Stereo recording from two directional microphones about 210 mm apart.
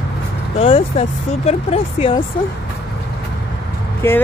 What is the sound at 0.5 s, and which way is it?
Speech, 25° left (ahead or behind).